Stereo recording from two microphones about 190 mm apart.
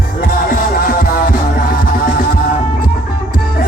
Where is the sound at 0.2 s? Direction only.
50° left (ahead or behind).